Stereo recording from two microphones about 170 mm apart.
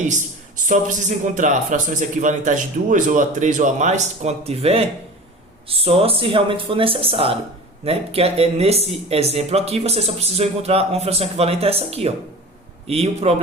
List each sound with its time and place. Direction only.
0.0 s a man's voice: 45° right (ahead or behind)